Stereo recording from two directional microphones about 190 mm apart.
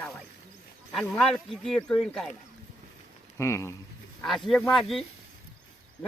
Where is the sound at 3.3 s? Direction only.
15° left (ahead or behind).